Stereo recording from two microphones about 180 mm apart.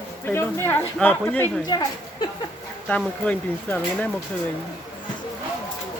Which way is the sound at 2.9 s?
10° left (ahead or behind).